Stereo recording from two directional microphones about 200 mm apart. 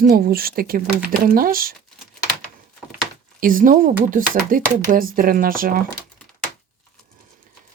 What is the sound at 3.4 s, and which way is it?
Speech, 45° right (ahead or behind).